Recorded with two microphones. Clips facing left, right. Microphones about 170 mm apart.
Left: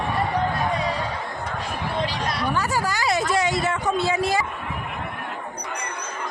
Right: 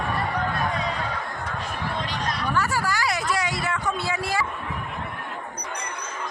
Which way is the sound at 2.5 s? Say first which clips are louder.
Left 1 dB; 20° left (ahead or behind).